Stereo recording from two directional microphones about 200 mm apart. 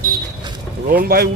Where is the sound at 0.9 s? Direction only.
50° right (ahead or behind).